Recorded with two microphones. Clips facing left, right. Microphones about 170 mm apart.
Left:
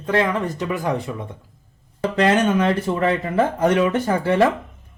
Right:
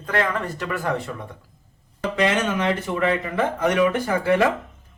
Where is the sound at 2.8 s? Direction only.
30° left (ahead or behind).